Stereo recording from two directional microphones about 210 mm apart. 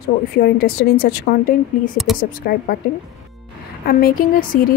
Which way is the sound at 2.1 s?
Centre (ahead or behind).